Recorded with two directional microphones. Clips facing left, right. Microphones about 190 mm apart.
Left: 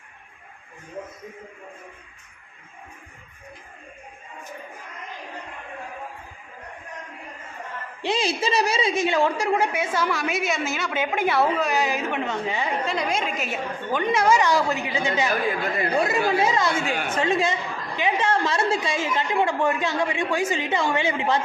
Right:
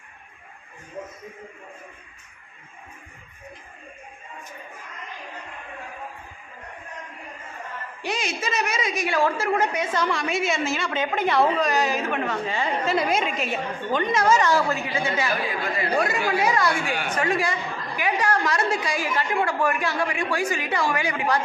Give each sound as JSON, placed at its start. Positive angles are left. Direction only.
{"t": 8.0, "sound": "a woman's voice", "side_deg": 30}
{"t": 12.8, "sound": "a woman's voice", "side_deg": -5}